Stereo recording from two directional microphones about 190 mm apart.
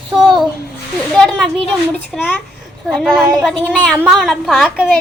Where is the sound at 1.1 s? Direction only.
Centre (ahead or behind).